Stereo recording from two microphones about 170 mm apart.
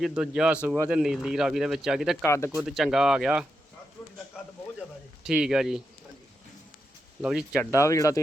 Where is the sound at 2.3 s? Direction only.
15° left (ahead or behind).